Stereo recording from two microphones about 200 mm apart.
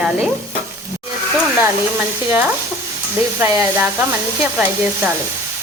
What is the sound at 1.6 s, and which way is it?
Speech, 10° right (ahead or behind).